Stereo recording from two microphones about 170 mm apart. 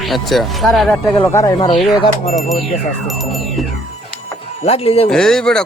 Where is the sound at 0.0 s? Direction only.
Centre (ahead or behind).